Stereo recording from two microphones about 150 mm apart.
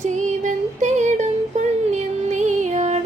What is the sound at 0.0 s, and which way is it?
Music, 55° right (ahead or behind).